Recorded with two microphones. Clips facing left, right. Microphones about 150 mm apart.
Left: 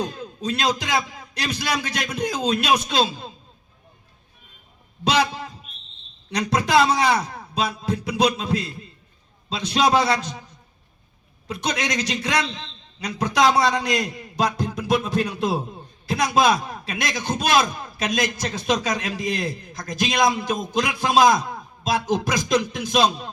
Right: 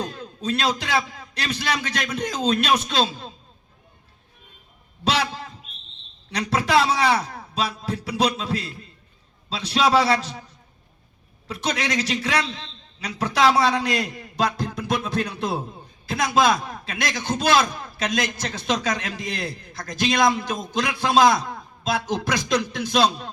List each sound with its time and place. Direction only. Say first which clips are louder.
0.2 s a man's voice: even; 15° left (ahead or behind)
6.3 s a man's voice: left 1 dB; 15° left (ahead or behind)
11.6 s a man's voice: even; 20° left (ahead or behind)